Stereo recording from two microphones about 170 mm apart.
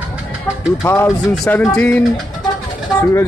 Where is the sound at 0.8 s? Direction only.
15° left (ahead or behind).